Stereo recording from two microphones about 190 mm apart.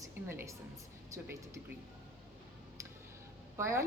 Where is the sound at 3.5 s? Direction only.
15° right (ahead or behind).